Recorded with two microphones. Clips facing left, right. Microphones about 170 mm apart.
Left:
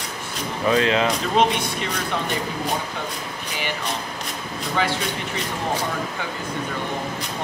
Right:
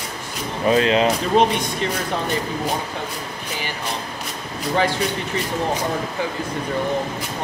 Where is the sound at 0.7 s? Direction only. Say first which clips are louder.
Right 3 dB; 25° right (ahead or behind).